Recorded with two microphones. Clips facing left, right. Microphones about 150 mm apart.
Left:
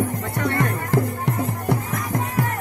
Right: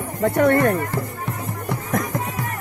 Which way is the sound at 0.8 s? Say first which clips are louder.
Left 5 dB; 85° left.